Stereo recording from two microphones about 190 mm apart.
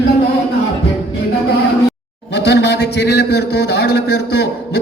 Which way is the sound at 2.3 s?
60° left (ahead or behind).